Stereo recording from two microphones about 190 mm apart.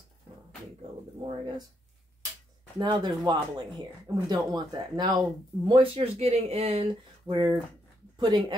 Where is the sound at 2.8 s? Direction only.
20° right (ahead or behind).